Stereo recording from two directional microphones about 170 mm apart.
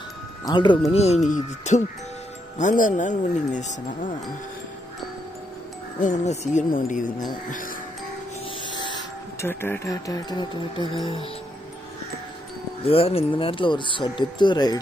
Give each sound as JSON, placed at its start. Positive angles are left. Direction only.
{"t": 0.5, "sound": "speech", "side_deg": 25}
{"t": 0.9, "sound": "speech", "side_deg": 40}
{"t": 5.9, "sound": "speech", "side_deg": 45}
{"t": 8.7, "sound": "a sound", "side_deg": 25}
{"t": 9.5, "sound": "speech", "side_deg": 15}
{"t": 12.8, "sound": "speech", "side_deg": 35}